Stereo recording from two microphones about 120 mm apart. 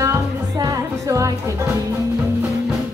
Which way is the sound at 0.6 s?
30° right (ahead or behind).